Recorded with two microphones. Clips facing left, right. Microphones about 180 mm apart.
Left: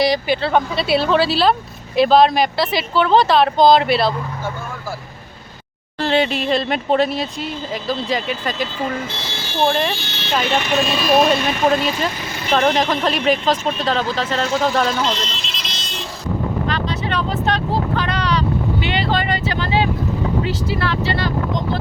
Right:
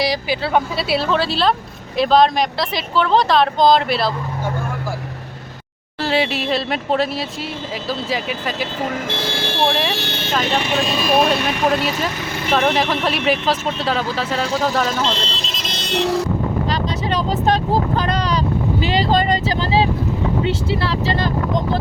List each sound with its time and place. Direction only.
0.0 s speech: centre (ahead or behind)
6.0 s speech: 5° right (ahead or behind)
9.2 s speech: 55° right (ahead or behind)
10.8 s speech: centre (ahead or behind)
15.0 s speech: 30° right (ahead or behind); by 16.2 s 70° right (ahead or behind)
17.2 s speech: 40° right (ahead or behind)
20.4 s speech: 25° right (ahead or behind)